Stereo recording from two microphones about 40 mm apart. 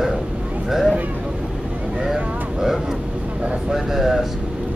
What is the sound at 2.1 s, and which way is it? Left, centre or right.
Speech, centre.